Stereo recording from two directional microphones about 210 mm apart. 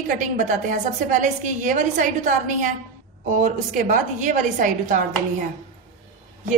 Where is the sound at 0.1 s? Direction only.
40° right (ahead or behind).